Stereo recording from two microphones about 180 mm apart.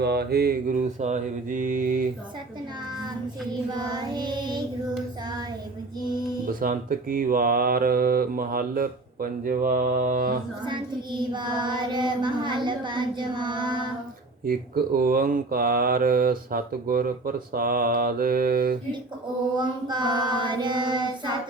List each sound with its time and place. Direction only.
0.0 s speech: 60° right (ahead or behind)
3.8 s child singing: 25° right (ahead or behind)
6.5 s speech: 50° right (ahead or behind)
10.7 s child singing: 25° right (ahead or behind)
14.4 s speech: 55° right (ahead or behind)
19.5 s child singing: 25° right (ahead or behind)